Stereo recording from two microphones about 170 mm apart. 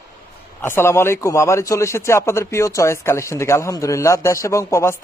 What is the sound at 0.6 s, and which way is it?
A man's voice, 15° left (ahead or behind).